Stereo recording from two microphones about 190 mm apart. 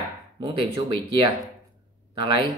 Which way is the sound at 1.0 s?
25° right (ahead or behind).